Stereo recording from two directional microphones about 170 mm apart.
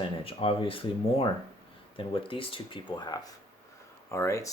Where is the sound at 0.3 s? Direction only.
35° left (ahead or behind).